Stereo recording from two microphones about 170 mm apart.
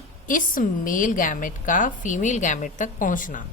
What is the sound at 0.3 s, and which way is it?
A woman's voice, 55° left (ahead or behind).